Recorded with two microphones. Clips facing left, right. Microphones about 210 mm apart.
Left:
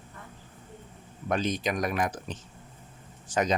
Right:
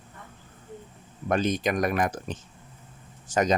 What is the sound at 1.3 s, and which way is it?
Speech, 50° right (ahead or behind).